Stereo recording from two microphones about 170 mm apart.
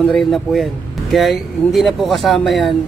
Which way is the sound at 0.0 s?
Centre (ahead or behind).